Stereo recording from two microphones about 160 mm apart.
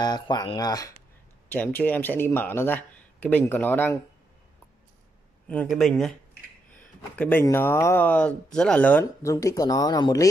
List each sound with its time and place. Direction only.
0.0 s speech: 25° left (ahead or behind)
1.5 s speech: 10° left (ahead or behind)
5.5 s speech: 5° left (ahead or behind)
7.2 s speech: 10° left (ahead or behind)